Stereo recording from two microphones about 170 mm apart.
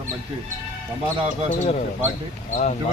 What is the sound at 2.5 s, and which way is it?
Speech, 45° left (ahead or behind).